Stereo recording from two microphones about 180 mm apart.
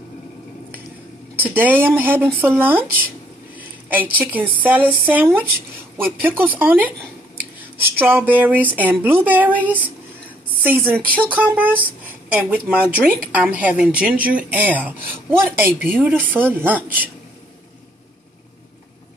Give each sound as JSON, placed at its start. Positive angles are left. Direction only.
{"t": 1.4, "sound": "a woman's voice", "side_deg": -10}
{"t": 3.5, "sound": "a sound", "side_deg": -10}
{"t": 4.2, "sound": "a woman's voice", "side_deg": -10}
{"t": 10.6, "sound": "a woman's voice", "side_deg": -10}